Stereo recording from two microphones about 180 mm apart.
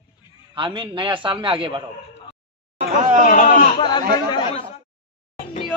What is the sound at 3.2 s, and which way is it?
Speech, 45° left (ahead or behind).